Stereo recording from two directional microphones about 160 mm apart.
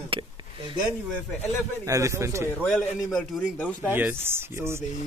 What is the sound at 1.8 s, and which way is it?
Speech, 20° right (ahead or behind).